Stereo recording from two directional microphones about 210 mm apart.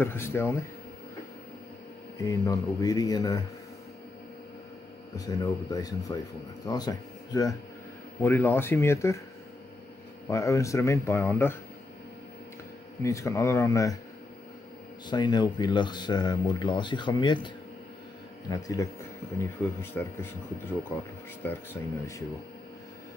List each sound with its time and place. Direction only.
0.0 s speech: 10° left (ahead or behind)
2.1 s speech: 15° left (ahead or behind)
5.1 s speech: 15° left (ahead or behind)
10.2 s speech: 15° left (ahead or behind)
13.0 s speech: 15° left (ahead or behind)
15.0 s speech: 20° left (ahead or behind)
18.5 s speech: 15° left (ahead or behind)
21.4 s speech: 10° left (ahead or behind)